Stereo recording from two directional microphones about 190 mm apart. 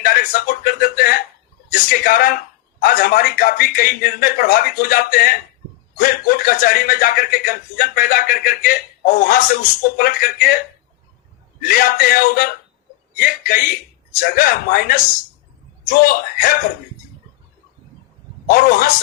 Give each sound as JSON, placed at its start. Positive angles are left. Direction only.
{"t": 0.0, "sound": "a man's voice", "side_deg": 50}
{"t": 11.6, "sound": "a man's voice", "side_deg": 50}
{"t": 18.5, "sound": "a man's voice", "side_deg": 50}